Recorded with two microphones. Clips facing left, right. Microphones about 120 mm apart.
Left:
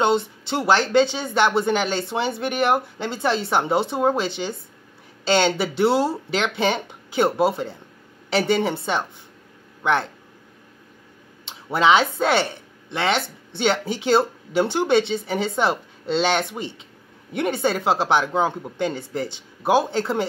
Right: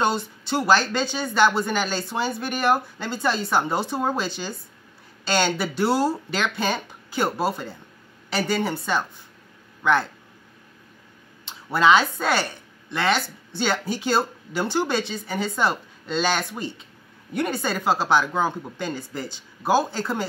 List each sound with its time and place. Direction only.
0.0 s speech: 25° left (ahead or behind)
11.4 s speech: 25° left (ahead or behind)